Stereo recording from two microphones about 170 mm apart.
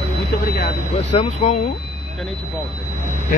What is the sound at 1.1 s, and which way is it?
Speech, 45° left (ahead or behind).